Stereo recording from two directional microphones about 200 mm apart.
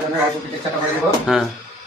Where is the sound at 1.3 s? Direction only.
Centre (ahead or behind).